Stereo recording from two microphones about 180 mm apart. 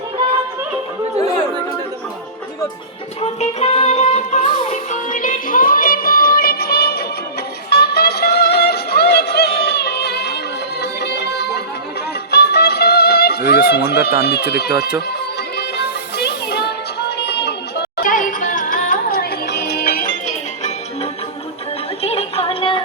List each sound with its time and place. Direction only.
3.2 s music: 35° left (ahead or behind); by 14.1 s 65° left (ahead or behind)
14.2 s speech: 65° left (ahead or behind)
15.5 s music: 65° left (ahead or behind)
20.2 s music: 40° left (ahead or behind)